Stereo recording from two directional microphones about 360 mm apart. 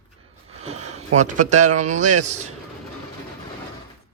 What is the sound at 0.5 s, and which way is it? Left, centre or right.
Speech, centre.